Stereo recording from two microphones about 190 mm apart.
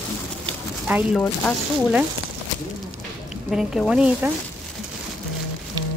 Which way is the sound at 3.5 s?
Centre (ahead or behind).